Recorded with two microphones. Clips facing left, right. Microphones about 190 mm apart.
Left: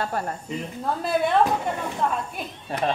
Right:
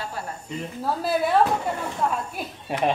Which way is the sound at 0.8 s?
5° right (ahead or behind).